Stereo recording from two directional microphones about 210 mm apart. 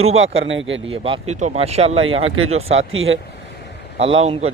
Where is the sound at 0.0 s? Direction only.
70° right (ahead or behind).